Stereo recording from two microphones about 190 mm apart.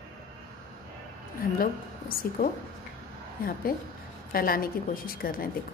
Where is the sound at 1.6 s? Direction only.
50° left (ahead or behind).